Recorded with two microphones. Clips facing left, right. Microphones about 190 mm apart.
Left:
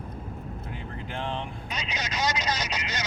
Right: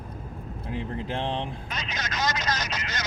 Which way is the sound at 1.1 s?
35° right (ahead or behind).